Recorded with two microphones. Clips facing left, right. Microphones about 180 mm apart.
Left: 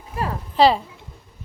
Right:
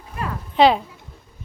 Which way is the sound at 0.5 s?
Centre (ahead or behind).